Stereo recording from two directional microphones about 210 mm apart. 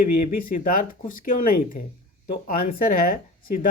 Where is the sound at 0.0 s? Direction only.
40° left (ahead or behind).